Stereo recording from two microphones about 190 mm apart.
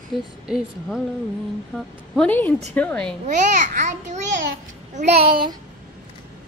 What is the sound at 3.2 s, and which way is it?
A child's voice, 40° right (ahead or behind).